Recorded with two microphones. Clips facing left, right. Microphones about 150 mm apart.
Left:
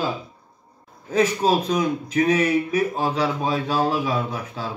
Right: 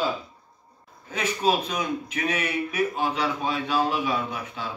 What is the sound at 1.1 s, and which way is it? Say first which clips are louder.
A man's voice: left 5 dB; 35° left (ahead or behind).